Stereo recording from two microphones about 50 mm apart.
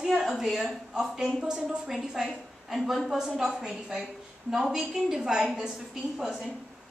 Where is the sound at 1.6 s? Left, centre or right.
Centre.